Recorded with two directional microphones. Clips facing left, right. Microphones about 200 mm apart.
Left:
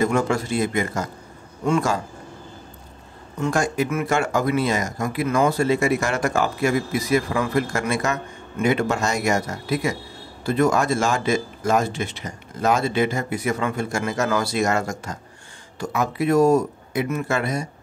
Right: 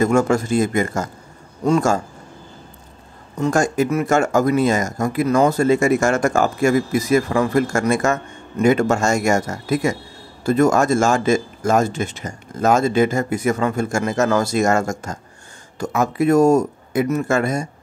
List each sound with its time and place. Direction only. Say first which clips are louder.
0.0 s a man's voice: right 4 dB; 45° right (ahead or behind)
3.3 s speech: right 4 dB; 45° right (ahead or behind)